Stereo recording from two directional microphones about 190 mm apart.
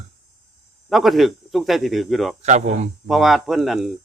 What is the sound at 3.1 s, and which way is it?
Speech, centre (ahead or behind).